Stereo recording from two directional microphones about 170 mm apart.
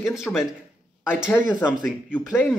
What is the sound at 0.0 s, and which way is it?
Speech, 5° right (ahead or behind).